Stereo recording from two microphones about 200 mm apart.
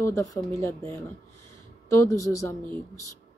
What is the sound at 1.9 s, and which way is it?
Speech, 15° left (ahead or behind).